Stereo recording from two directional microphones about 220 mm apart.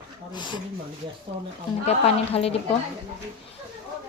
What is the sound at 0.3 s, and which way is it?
Speech, 20° left (ahead or behind).